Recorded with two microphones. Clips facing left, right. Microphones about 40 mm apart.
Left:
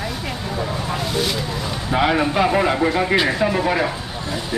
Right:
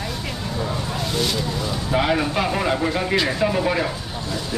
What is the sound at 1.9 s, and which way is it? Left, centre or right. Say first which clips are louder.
Speech: left 3 dB; centre.